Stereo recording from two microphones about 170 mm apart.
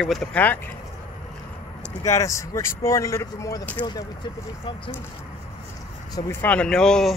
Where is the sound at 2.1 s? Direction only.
20° left (ahead or behind).